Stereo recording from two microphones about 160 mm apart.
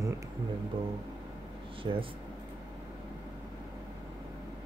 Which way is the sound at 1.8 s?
35° right (ahead or behind).